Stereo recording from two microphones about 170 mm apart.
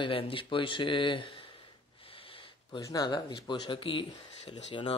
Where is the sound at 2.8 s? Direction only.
20° left (ahead or behind).